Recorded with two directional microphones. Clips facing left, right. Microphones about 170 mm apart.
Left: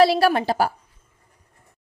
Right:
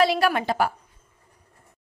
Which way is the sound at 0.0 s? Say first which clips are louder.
Left 4 dB; 35° left (ahead or behind).